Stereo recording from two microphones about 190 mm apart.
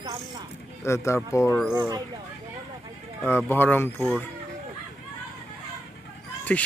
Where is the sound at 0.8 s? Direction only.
15° left (ahead or behind).